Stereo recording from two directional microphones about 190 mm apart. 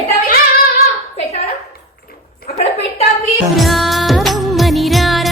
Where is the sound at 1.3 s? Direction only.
35° left (ahead or behind).